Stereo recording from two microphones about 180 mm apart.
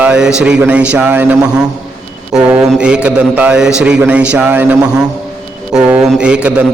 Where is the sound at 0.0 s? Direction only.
5° right (ahead or behind).